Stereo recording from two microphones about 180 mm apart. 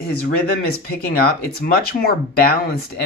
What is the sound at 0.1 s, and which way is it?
Speech, 60° left (ahead or behind).